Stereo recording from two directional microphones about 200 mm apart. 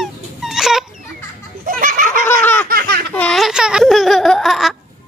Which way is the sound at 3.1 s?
5° left (ahead or behind).